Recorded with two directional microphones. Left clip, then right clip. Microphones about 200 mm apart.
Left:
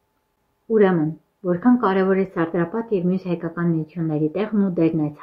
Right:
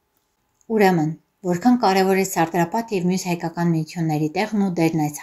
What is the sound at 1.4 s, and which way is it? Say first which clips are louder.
A woman's voice: right 1 dB; 25° right (ahead or behind).